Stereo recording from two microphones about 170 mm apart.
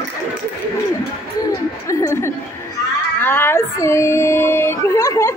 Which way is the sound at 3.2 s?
10° left (ahead or behind).